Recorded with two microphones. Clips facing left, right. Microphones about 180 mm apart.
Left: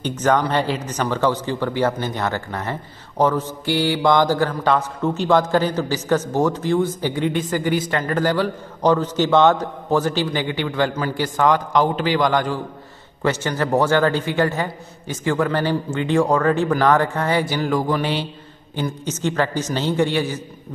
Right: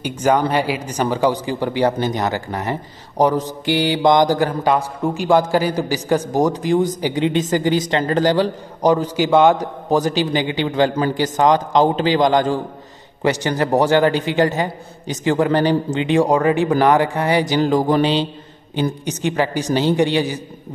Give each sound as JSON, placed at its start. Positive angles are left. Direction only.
{"t": 0.0, "sound": "a man's voice", "side_deg": -10}
{"t": 8.8, "sound": "a man's voice", "side_deg": -10}